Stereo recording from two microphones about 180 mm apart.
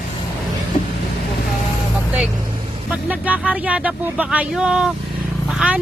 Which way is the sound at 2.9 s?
10° right (ahead or behind).